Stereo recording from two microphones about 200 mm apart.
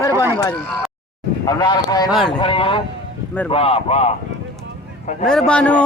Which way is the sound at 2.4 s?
25° left (ahead or behind).